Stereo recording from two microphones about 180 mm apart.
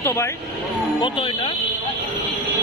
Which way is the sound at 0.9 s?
30° left (ahead or behind).